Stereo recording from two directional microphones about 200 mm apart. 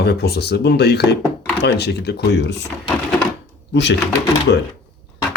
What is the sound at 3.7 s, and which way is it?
Speech, 60° left (ahead or behind).